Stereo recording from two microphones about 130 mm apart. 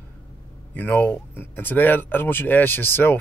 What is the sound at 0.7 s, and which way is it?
Speech, 15° left (ahead or behind).